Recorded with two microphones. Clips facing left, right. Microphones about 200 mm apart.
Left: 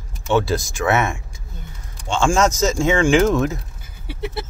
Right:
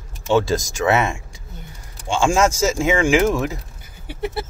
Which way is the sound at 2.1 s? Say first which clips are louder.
Even; 10° right (ahead or behind).